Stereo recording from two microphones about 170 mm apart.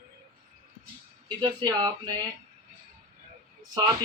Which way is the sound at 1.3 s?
25° right (ahead or behind).